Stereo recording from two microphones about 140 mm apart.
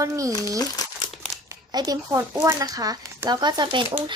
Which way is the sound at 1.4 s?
30° right (ahead or behind).